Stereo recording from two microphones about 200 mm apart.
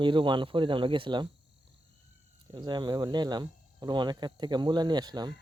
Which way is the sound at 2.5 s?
20° right (ahead or behind).